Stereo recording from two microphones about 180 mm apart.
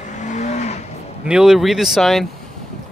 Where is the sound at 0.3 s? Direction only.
40° left (ahead or behind).